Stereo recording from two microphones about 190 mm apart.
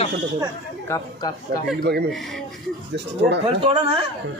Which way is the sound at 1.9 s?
60° right (ahead or behind).